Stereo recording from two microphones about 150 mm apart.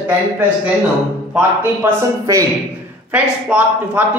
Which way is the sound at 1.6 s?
20° right (ahead or behind).